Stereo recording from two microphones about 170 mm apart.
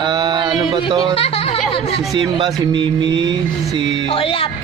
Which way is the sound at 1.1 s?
35° left (ahead or behind).